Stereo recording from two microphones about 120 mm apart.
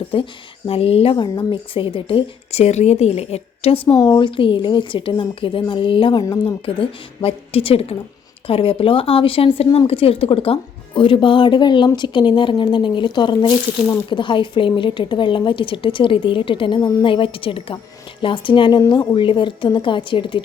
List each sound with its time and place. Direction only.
0.1 s speech: 45° left (ahead or behind)
1.1 s a woman's voice: 40° left (ahead or behind); by 3.9 s 55° left (ahead or behind)
3.9 s speech: 35° left (ahead or behind)